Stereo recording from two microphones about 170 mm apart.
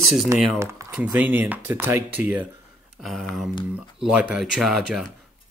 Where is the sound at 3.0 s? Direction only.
Centre (ahead or behind).